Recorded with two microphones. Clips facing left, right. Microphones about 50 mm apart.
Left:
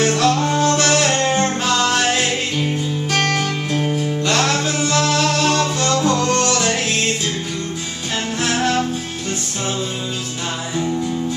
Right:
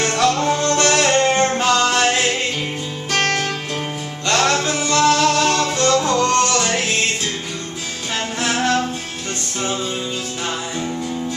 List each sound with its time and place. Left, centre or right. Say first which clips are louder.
0.0 s music: left 1 dB; centre
8.4 s music: even; centre